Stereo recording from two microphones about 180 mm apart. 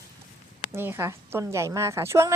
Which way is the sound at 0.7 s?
15° right (ahead or behind).